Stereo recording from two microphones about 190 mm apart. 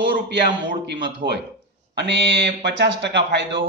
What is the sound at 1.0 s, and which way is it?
A man's voice, 65° right (ahead or behind).